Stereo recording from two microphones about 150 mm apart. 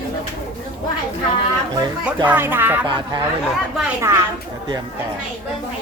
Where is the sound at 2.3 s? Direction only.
15° right (ahead or behind).